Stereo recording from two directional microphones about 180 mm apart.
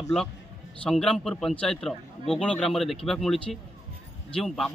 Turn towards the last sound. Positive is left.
turn(degrees=0)  # may be behind; listen again after turning